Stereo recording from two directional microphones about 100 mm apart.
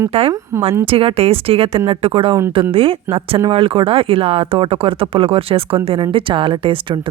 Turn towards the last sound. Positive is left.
turn(degrees=-60)  # may be behind; listen again after turning